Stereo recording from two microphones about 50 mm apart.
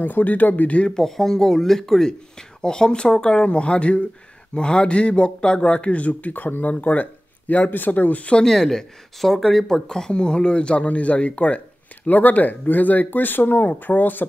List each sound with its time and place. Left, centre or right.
0.0 s speech: left
0.9 s speech: centre; by 8.5 s left
8.5 s speech: centre; by 14.2 s left